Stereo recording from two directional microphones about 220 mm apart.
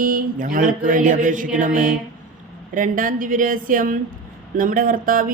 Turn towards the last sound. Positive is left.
turn(degrees=-40)  # may be behind; listen again after turning